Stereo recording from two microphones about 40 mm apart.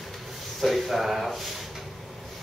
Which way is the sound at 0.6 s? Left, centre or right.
Centre.